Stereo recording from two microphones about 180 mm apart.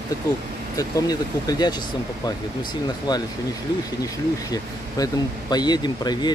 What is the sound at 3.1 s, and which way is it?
Speech, 20° left (ahead or behind).